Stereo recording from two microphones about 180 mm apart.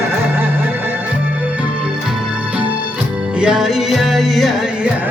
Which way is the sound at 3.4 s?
5° right (ahead or behind).